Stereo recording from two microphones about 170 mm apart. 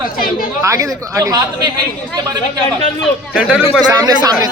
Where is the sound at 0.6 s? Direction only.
20° right (ahead or behind).